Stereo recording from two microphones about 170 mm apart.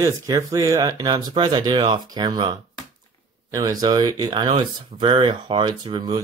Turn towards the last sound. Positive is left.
turn(degrees=-25)  # may be behind; listen again after turning